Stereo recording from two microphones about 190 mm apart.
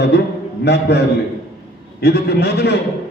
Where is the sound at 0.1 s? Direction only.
65° left (ahead or behind).